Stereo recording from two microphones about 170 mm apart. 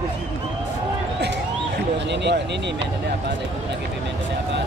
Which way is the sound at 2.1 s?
90° right.